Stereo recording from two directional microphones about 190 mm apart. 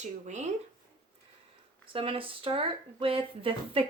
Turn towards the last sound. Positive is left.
turn(degrees=-30)  # may be behind; listen again after turning